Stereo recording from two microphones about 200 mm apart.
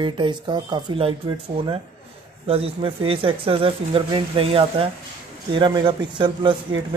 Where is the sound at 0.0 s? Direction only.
25° right (ahead or behind).